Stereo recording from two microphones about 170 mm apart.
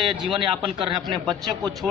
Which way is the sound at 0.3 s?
30° right (ahead or behind).